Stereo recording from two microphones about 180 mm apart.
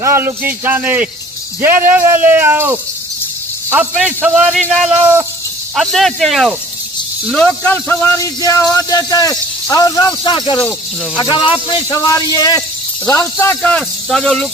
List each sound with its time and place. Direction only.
0.0 s speech: 10° right (ahead or behind)
3.9 s speech: 5° right (ahead or behind); by 13.6 s 15° left (ahead or behind)
13.6 s speech: 5° left (ahead or behind)